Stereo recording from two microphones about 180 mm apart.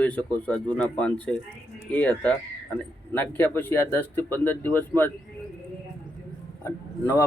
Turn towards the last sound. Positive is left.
turn(degrees=15)  # may be behind; listen again after turning